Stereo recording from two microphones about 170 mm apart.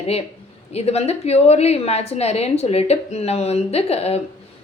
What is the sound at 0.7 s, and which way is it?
A woman's voice, 40° left (ahead or behind).